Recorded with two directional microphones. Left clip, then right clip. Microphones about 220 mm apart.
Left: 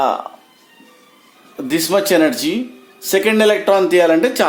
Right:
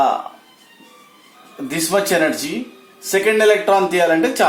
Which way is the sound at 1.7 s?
50° left (ahead or behind).